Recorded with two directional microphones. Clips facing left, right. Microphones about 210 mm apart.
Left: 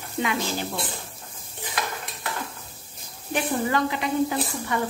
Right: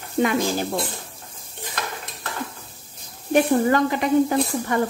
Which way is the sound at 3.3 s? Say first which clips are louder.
Right 7 dB; 45° right (ahead or behind).